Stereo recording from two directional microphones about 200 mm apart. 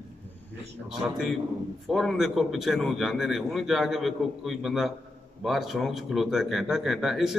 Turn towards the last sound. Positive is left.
turn(degrees=0)  # may be behind; listen again after turning